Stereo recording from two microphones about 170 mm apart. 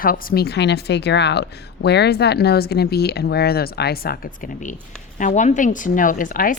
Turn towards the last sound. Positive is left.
turn(degrees=55)  # may be behind; listen again after turning